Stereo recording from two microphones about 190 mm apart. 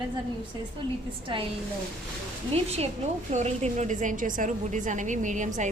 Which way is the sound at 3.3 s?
35° right (ahead or behind).